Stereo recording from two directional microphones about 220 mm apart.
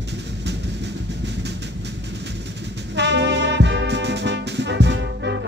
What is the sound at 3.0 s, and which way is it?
Music, 50° right (ahead or behind).